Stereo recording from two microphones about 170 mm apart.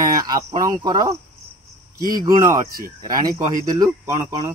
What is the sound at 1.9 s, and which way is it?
Speech, 55° right (ahead or behind).